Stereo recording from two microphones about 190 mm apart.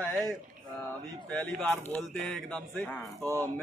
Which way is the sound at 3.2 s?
15° right (ahead or behind).